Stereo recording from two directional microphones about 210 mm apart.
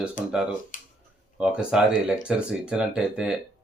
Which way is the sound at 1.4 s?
5° right (ahead or behind).